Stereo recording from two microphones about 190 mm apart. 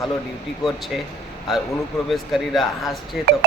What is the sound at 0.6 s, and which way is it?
Speech, centre (ahead or behind).